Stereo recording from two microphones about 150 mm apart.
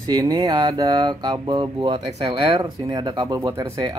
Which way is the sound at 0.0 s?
30° right (ahead or behind).